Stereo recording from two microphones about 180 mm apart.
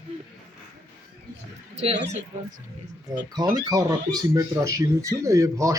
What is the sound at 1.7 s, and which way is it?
Speech, 35° right (ahead or behind).